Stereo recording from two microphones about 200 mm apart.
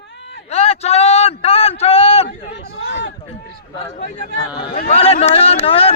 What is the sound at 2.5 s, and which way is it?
Speech, 60° left (ahead or behind).